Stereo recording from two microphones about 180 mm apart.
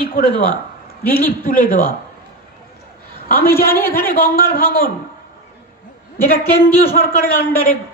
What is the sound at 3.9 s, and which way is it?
Speech, 55° left (ahead or behind).